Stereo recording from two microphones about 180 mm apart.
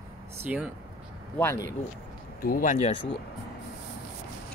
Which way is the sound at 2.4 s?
50° left (ahead or behind).